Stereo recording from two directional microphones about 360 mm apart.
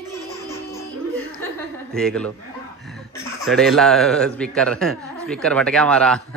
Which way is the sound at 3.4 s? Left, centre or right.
Centre.